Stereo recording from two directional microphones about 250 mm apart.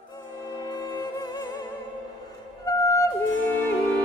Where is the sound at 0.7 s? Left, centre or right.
Centre.